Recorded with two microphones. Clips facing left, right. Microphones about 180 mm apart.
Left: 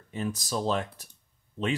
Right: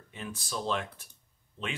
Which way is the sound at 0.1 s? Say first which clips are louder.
Left 7 dB; 40° left (ahead or behind).